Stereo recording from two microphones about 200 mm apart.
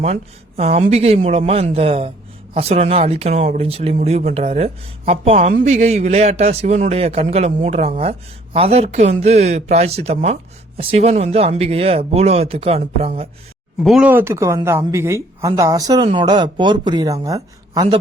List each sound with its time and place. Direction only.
0.0 s speech: 30° right (ahead or behind)
13.8 s speech: 5° right (ahead or behind)